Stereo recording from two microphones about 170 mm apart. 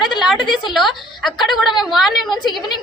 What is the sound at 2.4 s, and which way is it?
Speech, 25° left (ahead or behind).